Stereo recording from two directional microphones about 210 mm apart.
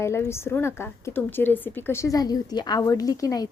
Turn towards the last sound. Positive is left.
turn(degrees=15)  # may be behind; listen again after turning